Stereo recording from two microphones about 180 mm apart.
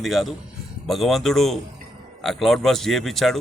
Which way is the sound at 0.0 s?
Centre (ahead or behind).